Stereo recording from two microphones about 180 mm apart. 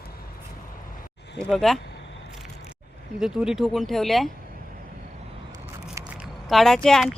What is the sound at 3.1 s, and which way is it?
Speech, 5° right (ahead or behind).